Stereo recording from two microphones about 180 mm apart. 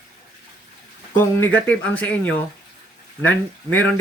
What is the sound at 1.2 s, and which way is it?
Speech, 10° left (ahead or behind).